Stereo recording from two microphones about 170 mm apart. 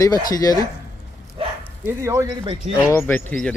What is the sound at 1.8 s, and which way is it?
Speech, 15° right (ahead or behind).